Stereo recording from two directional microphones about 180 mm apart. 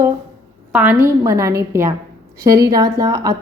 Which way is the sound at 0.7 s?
10° right (ahead or behind).